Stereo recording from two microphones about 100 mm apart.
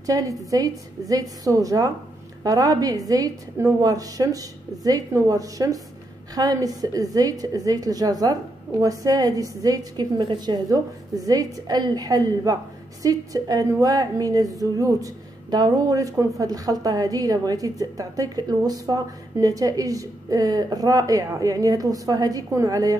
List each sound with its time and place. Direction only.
0.0 s a woman's voice: 35° right (ahead or behind)